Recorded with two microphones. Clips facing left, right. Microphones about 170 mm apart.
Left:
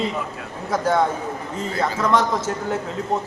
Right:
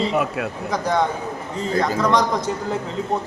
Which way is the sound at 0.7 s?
5° left (ahead or behind).